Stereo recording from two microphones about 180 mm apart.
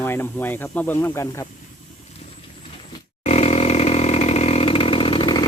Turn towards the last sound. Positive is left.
turn(degrees=25)  # may be behind; listen again after turning